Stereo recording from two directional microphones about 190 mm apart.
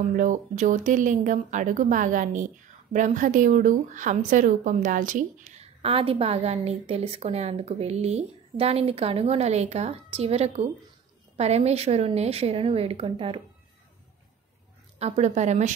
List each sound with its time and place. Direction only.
0.1 s speech: 45° right (ahead or behind)
15.0 s speech: 35° right (ahead or behind)